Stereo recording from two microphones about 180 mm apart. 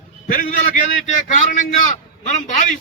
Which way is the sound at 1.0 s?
45° left (ahead or behind).